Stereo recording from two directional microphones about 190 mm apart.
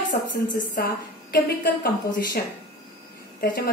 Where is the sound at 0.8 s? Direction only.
50° left (ahead or behind).